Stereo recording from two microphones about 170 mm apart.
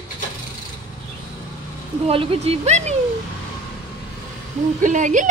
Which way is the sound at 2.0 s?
35° right (ahead or behind).